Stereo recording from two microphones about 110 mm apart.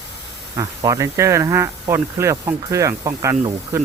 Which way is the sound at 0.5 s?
35° right (ahead or behind).